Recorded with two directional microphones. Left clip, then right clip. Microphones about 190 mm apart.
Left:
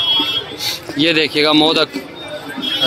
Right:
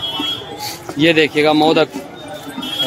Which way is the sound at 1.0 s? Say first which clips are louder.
Right 2 dB; 5° right (ahead or behind).